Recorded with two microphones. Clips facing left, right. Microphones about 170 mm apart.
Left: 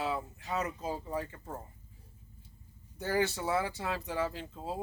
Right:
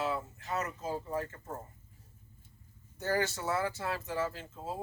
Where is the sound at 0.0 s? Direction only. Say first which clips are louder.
Even; 15° left (ahead or behind).